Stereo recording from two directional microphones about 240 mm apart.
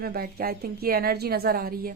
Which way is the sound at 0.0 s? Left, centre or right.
Right.